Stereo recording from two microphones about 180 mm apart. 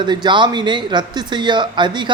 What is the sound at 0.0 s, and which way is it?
Speech, 25° right (ahead or behind).